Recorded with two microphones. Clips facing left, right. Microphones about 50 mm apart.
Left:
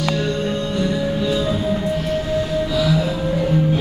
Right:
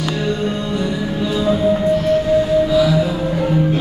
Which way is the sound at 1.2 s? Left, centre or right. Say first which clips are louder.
Right 7 dB; centre.